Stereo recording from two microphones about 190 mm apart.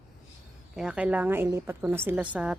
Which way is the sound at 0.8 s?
5° right (ahead or behind).